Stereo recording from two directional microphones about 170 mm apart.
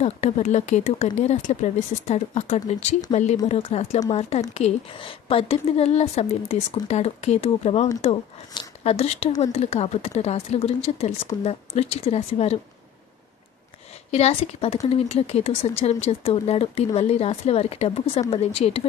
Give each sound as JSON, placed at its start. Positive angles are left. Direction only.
{"t": 0.0, "sound": "speech", "side_deg": 40}
{"t": 14.1, "sound": "speech", "side_deg": 35}